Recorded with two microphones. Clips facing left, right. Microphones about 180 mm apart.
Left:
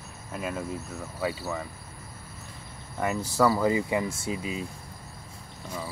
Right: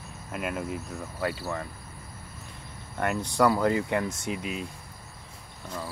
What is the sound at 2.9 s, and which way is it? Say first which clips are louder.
Speech: even; 5° left (ahead or behind).